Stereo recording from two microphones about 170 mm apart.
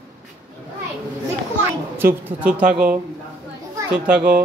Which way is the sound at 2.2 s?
10° right (ahead or behind).